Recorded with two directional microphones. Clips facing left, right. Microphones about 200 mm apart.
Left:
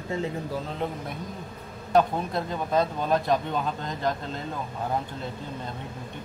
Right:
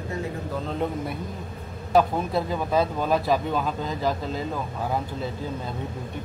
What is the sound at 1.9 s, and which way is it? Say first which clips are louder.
Speech: right 2 dB; 5° right (ahead or behind).